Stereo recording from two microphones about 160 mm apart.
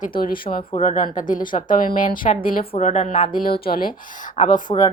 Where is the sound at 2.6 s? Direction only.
40° left (ahead or behind).